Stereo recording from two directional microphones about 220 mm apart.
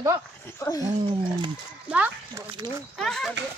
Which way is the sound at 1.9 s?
10° right (ahead or behind).